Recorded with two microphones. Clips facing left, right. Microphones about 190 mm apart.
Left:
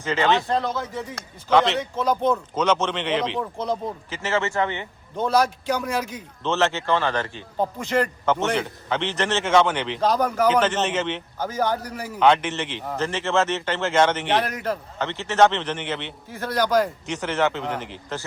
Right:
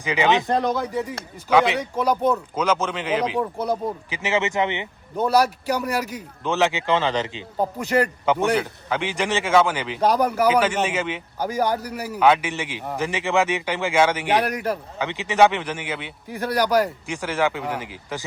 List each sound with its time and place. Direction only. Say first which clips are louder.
0.0 s a man's voice: right 1 dB; 15° right (ahead or behind)